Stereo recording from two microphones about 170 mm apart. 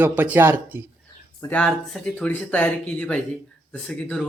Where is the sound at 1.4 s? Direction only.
10° left (ahead or behind).